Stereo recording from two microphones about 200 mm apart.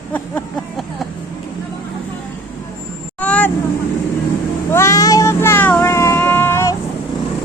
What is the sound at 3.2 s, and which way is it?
Vehicle, 5° left (ahead or behind).